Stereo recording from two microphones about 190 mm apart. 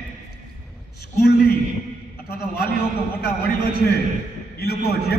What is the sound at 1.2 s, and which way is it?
A man's voice, 55° left (ahead or behind).